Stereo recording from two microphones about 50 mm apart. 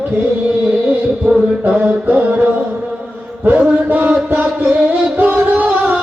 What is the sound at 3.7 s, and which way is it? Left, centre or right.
Music, right.